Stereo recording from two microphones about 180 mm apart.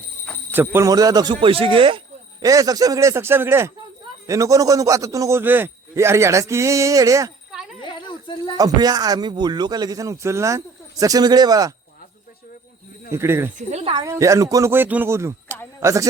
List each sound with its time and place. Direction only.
0.5 s a man's voice: 10° right (ahead or behind); by 2.0 s 30° right (ahead or behind)
2.4 s a man's voice: 20° right (ahead or behind)
7.5 s a sound: 5° right (ahead or behind)
7.8 s snake: 25° left (ahead or behind)
8.5 s a man's voice: 20° right (ahead or behind)
13.1 s speech: 15° right (ahead or behind)
13.6 s a woman's voice: 40° right (ahead or behind)
14.0 s a man's voice: 15° right (ahead or behind)